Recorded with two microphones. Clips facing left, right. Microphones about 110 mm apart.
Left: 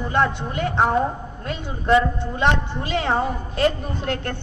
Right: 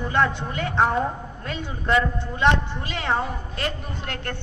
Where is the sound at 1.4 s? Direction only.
30° left (ahead or behind).